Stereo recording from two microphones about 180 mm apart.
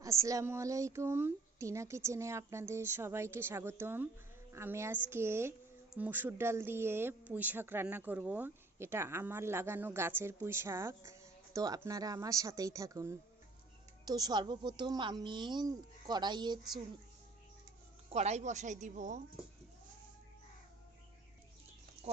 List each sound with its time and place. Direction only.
0.0 s a woman's voice: 15° right (ahead or behind)
18.1 s a woman's voice: 40° right (ahead or behind)